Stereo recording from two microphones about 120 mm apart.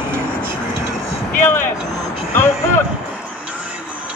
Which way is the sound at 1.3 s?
15° left (ahead or behind).